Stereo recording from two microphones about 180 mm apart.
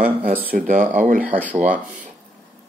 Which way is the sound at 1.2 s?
10° right (ahead or behind).